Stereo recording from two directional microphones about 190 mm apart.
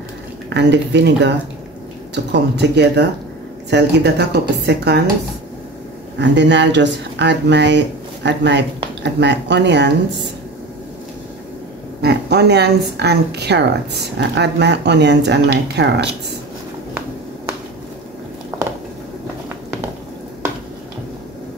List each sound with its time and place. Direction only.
0.5 s speech: 65° right (ahead or behind)
6.1 s speech: 65° right (ahead or behind)
12.0 s speech: 60° right (ahead or behind)